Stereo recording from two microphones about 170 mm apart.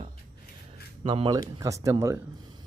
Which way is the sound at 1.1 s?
30° right (ahead or behind).